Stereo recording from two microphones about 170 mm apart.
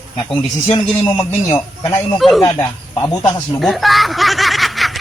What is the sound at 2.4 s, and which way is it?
Speech, 20° left (ahead or behind).